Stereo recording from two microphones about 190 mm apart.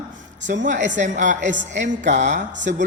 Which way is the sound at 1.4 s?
70° right (ahead or behind).